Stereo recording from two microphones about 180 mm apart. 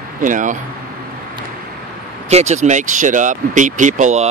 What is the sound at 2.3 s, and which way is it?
Speech, 40° right (ahead or behind).